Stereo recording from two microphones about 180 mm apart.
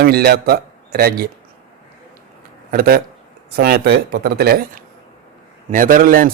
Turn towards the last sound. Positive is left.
turn(degrees=-50)  # may be behind; listen again after turning